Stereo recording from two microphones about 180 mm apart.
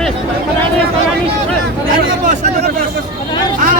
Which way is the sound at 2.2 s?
40° right (ahead or behind).